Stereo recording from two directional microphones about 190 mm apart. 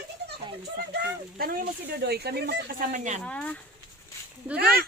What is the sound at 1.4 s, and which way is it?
Speech, 55° right (ahead or behind).